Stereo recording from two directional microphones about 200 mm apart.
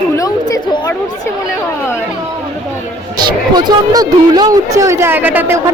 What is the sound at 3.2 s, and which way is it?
Speech, 20° right (ahead or behind).